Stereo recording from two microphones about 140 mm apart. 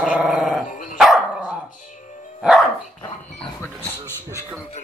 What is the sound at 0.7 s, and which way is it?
Dog, 65° left (ahead or behind).